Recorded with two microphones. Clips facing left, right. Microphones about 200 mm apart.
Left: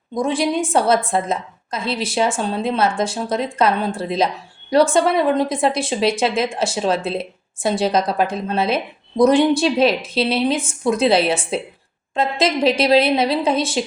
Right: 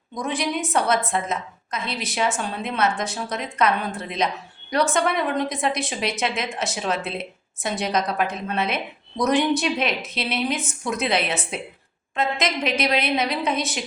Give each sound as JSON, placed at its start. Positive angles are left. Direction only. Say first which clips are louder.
{"t": 0.1, "sound": "speech", "louder": "left 7 dB", "side_deg": 30}